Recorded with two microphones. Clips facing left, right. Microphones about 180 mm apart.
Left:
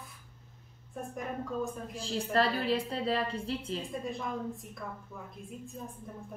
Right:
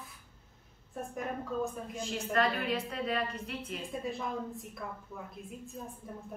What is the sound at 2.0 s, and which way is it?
A woman's voice, 35° left (ahead or behind).